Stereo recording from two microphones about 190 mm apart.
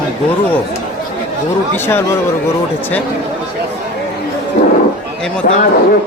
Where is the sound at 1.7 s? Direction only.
10° left (ahead or behind).